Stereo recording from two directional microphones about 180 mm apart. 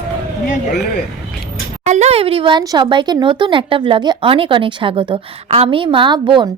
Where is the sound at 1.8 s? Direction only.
40° right (ahead or behind).